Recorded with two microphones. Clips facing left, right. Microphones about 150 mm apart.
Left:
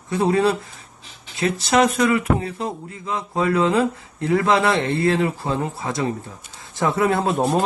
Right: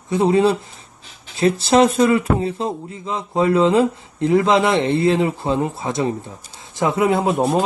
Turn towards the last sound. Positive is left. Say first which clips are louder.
# right 2 dB
turn(degrees=0)  # may be behind; listen again after turning